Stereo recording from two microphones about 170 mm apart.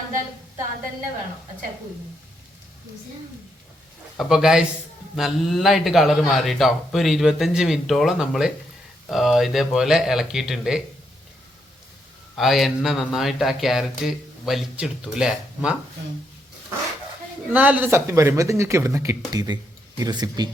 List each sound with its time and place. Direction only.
4.2 s speech: centre (ahead or behind)
12.4 s speech: centre (ahead or behind)
17.5 s speech: 10° right (ahead or behind)